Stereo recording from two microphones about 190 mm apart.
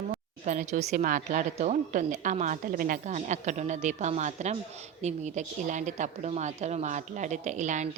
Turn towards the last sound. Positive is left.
turn(degrees=-40)  # may be behind; listen again after turning